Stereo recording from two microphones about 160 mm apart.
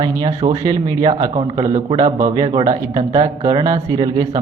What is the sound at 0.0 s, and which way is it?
A man's voice, 25° right (ahead or behind).